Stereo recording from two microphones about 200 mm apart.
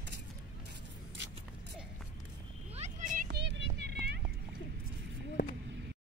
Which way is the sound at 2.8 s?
40° right (ahead or behind).